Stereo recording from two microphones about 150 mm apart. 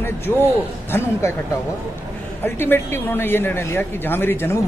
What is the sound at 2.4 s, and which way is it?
A woman's voice, 15° left (ahead or behind).